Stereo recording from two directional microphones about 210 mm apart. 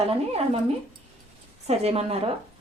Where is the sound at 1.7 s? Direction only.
30° right (ahead or behind).